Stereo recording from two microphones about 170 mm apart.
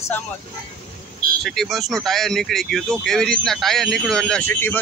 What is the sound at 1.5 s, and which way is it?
Speech, centre (ahead or behind).